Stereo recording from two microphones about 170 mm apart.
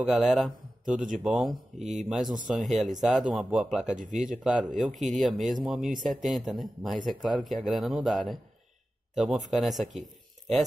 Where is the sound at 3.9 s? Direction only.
45° right (ahead or behind).